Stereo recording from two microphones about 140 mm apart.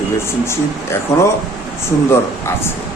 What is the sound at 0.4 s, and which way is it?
Speech, 20° left (ahead or behind).